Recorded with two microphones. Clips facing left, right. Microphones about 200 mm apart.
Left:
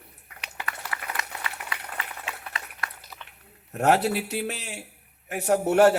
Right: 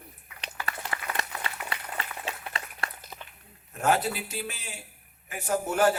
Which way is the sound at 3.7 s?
65° left (ahead or behind).